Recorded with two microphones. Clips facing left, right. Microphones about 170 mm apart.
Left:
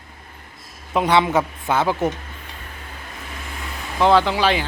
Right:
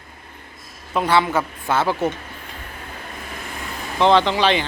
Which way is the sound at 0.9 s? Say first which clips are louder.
Left 1 dB; 15° left (ahead or behind).